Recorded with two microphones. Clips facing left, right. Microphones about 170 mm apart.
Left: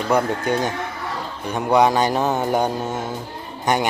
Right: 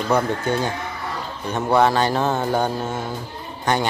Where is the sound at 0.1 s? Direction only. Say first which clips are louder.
Left 1 dB; 15° left (ahead or behind).